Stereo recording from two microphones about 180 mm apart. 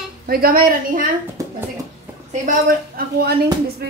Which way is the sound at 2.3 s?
50° right (ahead or behind).